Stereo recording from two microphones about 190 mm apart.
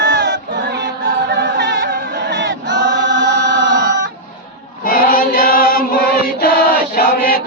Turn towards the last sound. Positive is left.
turn(degrees=50)  # may be behind; listen again after turning